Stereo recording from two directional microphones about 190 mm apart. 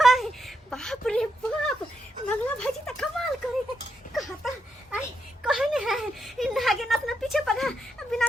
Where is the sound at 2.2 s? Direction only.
5° left (ahead or behind).